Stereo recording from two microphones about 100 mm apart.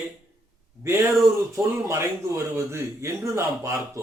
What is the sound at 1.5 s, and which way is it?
Speech, 30° right (ahead or behind).